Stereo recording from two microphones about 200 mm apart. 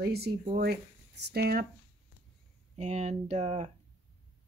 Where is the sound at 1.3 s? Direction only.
50° right (ahead or behind).